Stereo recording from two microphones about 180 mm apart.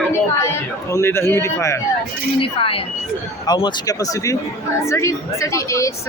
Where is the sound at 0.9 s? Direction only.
15° left (ahead or behind).